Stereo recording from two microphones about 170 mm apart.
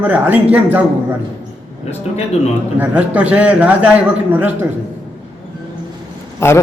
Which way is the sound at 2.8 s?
10° right (ahead or behind).